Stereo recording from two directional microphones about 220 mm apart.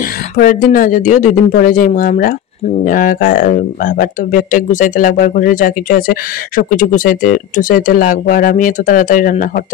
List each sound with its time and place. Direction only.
0.4 s speech: 40° left (ahead or behind)